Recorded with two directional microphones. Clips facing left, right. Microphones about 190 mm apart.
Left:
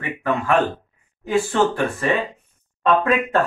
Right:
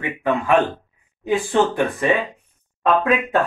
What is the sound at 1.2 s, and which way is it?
Speech, 15° right (ahead or behind).